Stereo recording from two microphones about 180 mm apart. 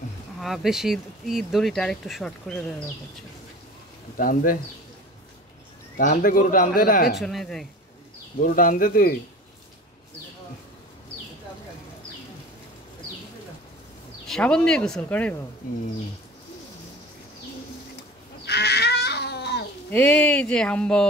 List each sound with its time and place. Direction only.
0.4 s speech: centre (ahead or behind)
4.2 s a man's voice: 50° left (ahead or behind)
5.9 s a man's voice: 50° left (ahead or behind)
7.2 s speech: centre (ahead or behind)
8.4 s a man's voice: 50° left (ahead or behind)
14.2 s speech: 5° left (ahead or behind)
18.4 s a sound: 65° left (ahead or behind)
19.9 s speech: 5° left (ahead or behind)